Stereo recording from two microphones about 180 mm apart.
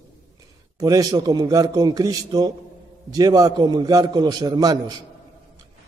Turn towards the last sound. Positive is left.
turn(degrees=-20)  # may be behind; listen again after turning